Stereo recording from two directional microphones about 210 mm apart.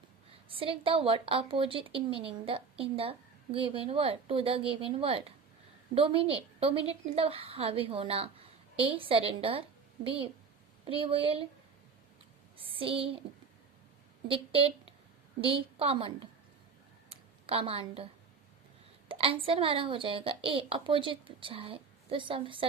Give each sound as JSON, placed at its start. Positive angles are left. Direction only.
{"t": 0.4, "sound": "a woman's voice", "side_deg": -25}
{"t": 12.5, "sound": "a woman's voice", "side_deg": -25}
{"t": 14.3, "sound": "a woman's voice", "side_deg": -25}
{"t": 17.1, "sound": "a sound", "side_deg": -25}
{"t": 19.0, "sound": "a woman's voice", "side_deg": -25}